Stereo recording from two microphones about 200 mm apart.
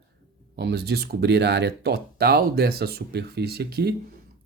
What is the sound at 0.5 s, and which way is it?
Speech, 55° right (ahead or behind).